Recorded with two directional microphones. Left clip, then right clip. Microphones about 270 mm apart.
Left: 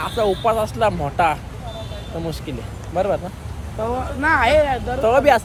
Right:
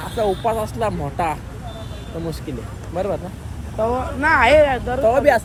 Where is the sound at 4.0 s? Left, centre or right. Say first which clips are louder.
Right 1 dB; right.